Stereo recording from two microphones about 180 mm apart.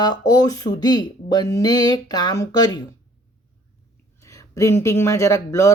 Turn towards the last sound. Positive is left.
turn(degrees=15)  # may be behind; listen again after turning